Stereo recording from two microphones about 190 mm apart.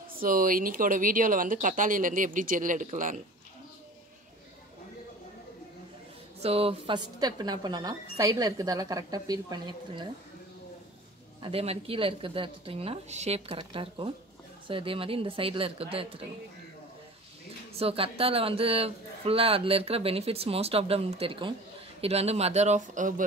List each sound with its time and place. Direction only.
0.2 s speech: 45° right (ahead or behind)
6.4 s speech: 30° right (ahead or behind)
11.4 s speech: 30° right (ahead or behind)
17.7 s speech: 30° right (ahead or behind)